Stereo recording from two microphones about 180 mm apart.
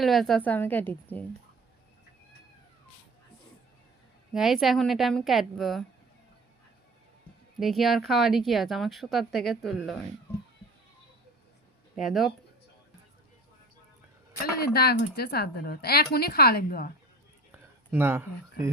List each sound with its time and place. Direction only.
0.0 s a woman's voice: centre (ahead or behind)
4.4 s speech: centre (ahead or behind)
7.6 s speech: centre (ahead or behind)
11.9 s speech: centre (ahead or behind)
14.4 s a woman's voice: 60° left (ahead or behind)
17.9 s speech: 10° right (ahead or behind)